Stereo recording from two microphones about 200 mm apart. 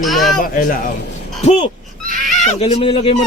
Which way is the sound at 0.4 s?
45° left (ahead or behind).